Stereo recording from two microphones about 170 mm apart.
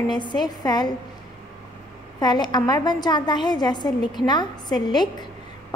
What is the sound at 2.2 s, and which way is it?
A woman's voice, 25° left (ahead or behind).